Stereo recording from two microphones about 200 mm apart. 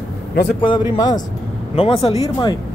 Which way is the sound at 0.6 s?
25° left (ahead or behind).